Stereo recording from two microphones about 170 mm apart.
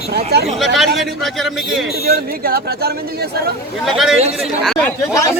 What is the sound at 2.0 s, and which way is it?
Speech, 60° right (ahead or behind).